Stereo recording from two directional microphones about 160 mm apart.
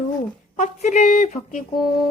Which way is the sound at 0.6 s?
50° left (ahead or behind).